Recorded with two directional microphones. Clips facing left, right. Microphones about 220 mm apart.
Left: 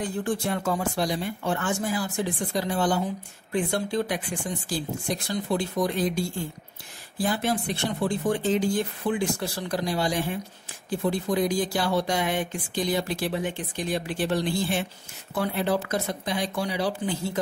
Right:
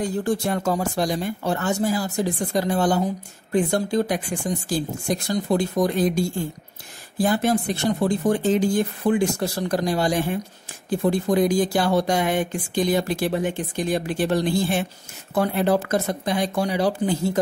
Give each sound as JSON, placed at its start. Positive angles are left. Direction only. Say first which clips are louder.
{"t": 0.2, "sound": "speech", "louder": "right 4 dB", "side_deg": -40}